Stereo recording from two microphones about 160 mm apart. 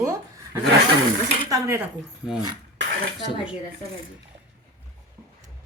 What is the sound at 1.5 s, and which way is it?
Speech, 15° right (ahead or behind).